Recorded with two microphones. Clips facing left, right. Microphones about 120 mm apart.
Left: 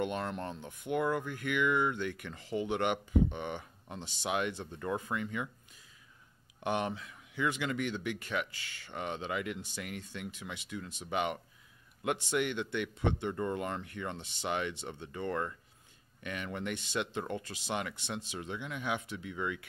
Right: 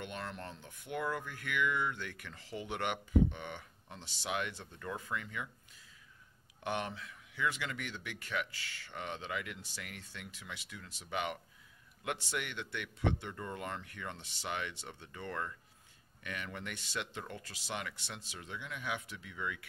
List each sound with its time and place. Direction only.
0.0 s speech: 20° left (ahead or behind)
6.6 s speech: 20° left (ahead or behind)